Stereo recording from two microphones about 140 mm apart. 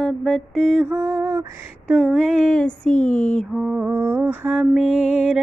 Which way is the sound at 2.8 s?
60° left (ahead or behind).